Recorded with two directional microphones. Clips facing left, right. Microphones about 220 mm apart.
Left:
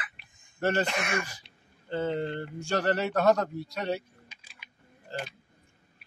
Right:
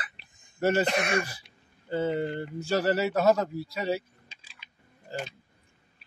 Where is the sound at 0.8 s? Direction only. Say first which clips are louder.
Right 5 dB; 35° right (ahead or behind).